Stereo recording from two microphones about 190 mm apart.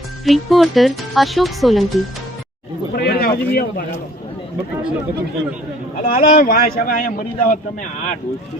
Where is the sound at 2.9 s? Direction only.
55° left (ahead or behind).